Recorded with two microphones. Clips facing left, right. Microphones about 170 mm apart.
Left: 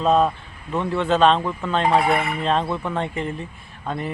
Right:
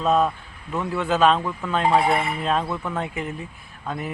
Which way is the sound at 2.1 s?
30° right (ahead or behind).